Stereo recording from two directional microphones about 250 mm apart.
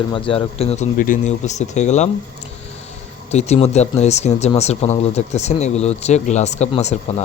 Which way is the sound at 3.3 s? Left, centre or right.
Left.